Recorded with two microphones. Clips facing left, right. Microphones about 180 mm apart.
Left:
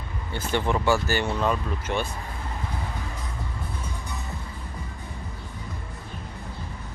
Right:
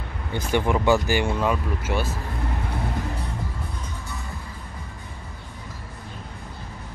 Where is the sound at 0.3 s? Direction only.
15° right (ahead or behind).